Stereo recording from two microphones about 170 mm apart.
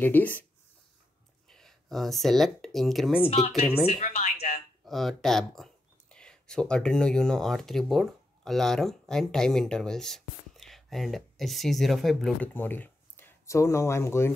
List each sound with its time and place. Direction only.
0.0 s speech: 10° left (ahead or behind)
1.5 s speech: centre (ahead or behind)
3.3 s speech: 35° left (ahead or behind)
4.8 s speech: centre (ahead or behind)
12.5 s speech: 10° left (ahead or behind)